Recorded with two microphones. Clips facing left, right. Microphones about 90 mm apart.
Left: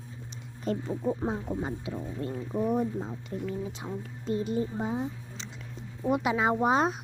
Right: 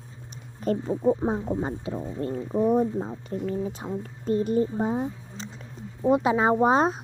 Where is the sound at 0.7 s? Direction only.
50° right (ahead or behind).